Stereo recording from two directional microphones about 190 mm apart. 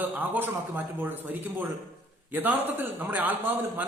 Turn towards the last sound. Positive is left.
turn(degrees=-10)  # may be behind; listen again after turning